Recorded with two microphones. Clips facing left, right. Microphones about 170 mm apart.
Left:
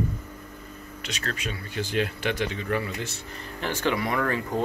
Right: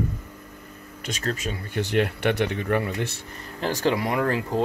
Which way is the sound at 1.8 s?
65° right (ahead or behind).